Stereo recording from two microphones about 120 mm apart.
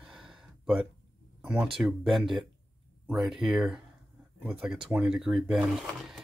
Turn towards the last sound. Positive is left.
turn(degrees=0)  # may be behind; listen again after turning